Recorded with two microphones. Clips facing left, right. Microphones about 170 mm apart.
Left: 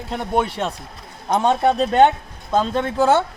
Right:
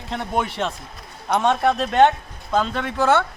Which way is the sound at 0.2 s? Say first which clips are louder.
Left 3 dB; 5° left (ahead or behind).